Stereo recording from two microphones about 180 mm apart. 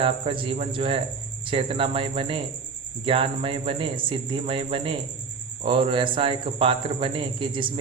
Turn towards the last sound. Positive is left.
turn(degrees=-25)  # may be behind; listen again after turning